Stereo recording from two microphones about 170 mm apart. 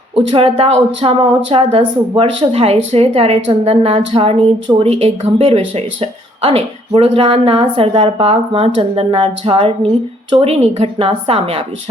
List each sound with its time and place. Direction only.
0.2 s speech: 30° right (ahead or behind)